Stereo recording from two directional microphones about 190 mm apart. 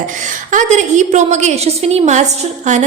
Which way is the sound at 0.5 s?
40° right (ahead or behind).